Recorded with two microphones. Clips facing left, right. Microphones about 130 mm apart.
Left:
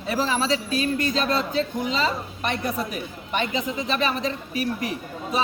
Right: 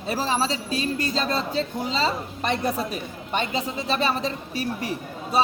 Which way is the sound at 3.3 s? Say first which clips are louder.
Left 1 dB; 35° right (ahead or behind).